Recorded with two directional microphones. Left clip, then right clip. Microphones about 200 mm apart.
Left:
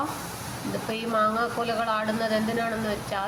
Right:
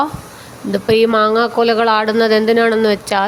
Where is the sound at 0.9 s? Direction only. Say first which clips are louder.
Right 14 dB; 55° right (ahead or behind).